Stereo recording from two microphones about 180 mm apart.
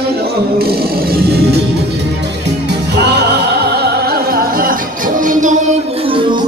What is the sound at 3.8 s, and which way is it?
Music, 55° right (ahead or behind).